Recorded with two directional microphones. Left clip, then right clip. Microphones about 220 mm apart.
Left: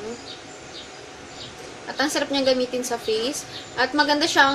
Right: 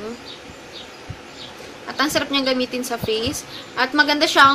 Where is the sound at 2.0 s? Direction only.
10° right (ahead or behind).